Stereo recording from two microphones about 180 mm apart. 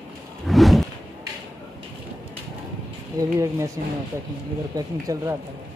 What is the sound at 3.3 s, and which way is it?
Speech, 15° right (ahead or behind).